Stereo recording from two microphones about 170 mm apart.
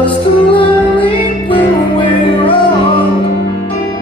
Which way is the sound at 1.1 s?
30° left (ahead or behind).